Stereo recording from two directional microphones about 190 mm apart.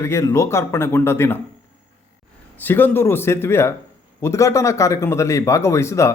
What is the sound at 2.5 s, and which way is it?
Speech, 10° left (ahead or behind).